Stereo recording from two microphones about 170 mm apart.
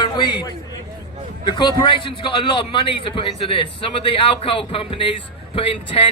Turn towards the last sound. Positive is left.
turn(degrees=30)  # may be behind; listen again after turning